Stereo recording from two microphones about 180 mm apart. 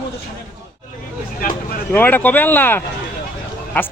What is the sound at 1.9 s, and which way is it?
Speech, 10° left (ahead or behind).